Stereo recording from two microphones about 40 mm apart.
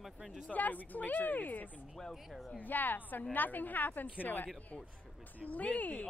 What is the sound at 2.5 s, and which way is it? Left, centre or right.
A woman's voice, left.